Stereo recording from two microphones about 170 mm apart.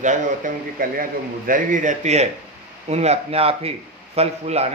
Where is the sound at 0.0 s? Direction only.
50° right (ahead or behind).